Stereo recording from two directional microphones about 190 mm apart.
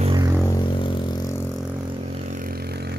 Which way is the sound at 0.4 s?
20° left (ahead or behind).